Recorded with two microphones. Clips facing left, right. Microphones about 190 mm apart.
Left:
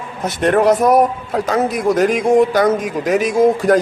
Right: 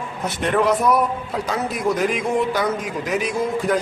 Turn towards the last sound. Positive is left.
turn(degrees=45)  # may be behind; listen again after turning